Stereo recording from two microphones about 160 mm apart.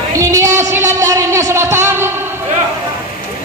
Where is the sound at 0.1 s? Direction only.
20° right (ahead or behind).